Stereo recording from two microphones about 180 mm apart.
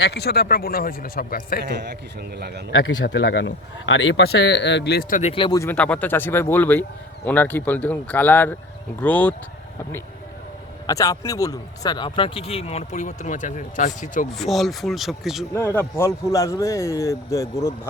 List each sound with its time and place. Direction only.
0.0 s speech: 65° left (ahead or behind)
2.4 s a man's voice: 65° right (ahead or behind)
2.7 s speech: 90° left; by 5.3 s 50° left (ahead or behind)
5.3 s speech: 30° left (ahead or behind)
5.5 s speech: 10° left (ahead or behind)
10.8 s speech: 20° left (ahead or behind); by 14.3 s 45° left (ahead or behind)
14.3 s speech: centre (ahead or behind)
15.5 s speech: 15° left (ahead or behind)